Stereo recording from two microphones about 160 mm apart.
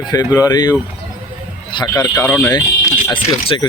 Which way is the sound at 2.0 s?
10° left (ahead or behind).